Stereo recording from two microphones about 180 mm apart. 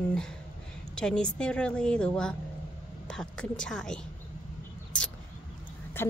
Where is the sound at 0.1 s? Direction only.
5° left (ahead or behind).